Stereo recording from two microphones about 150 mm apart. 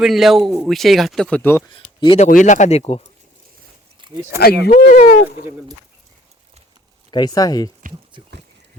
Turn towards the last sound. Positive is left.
turn(degrees=25)  # may be behind; listen again after turning